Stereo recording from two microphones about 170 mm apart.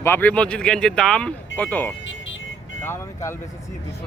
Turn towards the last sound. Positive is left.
turn(degrees=15)  # may be behind; listen again after turning